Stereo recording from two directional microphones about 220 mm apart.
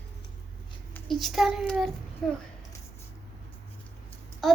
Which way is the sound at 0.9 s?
Centre (ahead or behind).